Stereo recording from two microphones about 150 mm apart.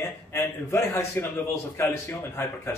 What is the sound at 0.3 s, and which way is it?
Speech, 20° left (ahead or behind).